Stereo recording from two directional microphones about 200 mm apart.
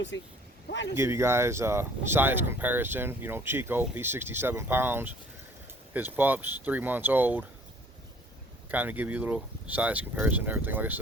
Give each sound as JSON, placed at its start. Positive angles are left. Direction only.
{"t": 0.1, "sound": "speech", "side_deg": 65}
{"t": 0.9, "sound": "speech", "side_deg": -15}
{"t": 8.7, "sound": "speech", "side_deg": -10}